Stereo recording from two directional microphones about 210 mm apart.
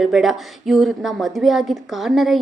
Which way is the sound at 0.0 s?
Centre (ahead or behind).